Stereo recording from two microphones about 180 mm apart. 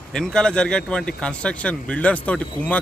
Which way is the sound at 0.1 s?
5° left (ahead or behind).